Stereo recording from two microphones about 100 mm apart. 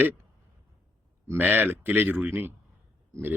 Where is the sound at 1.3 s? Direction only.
20° right (ahead or behind).